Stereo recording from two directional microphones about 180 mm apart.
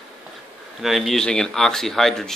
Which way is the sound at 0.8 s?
Centre (ahead or behind).